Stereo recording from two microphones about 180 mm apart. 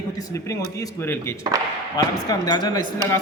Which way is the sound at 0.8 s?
15° left (ahead or behind).